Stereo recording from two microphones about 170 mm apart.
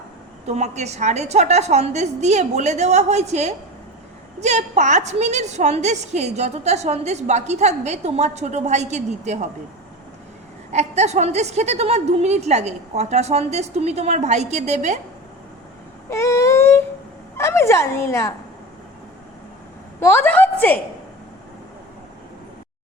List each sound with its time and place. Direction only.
0.4 s a woman's voice: 40° right (ahead or behind)
10.7 s a woman's voice: 40° right (ahead or behind)
16.0 s a sound: 15° left (ahead or behind)
17.3 s speech: 15° left (ahead or behind)
20.0 s a woman's voice: 15° left (ahead or behind)